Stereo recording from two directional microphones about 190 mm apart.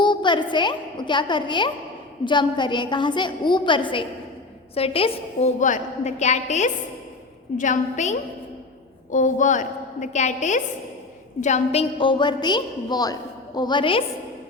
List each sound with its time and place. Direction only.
0.0 s a woman's voice: 25° left (ahead or behind)